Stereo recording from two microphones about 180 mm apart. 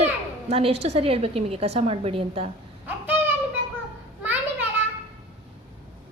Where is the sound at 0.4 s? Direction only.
35° right (ahead or behind).